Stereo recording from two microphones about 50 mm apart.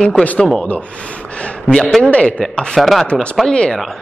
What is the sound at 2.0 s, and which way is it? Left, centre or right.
Speech, left.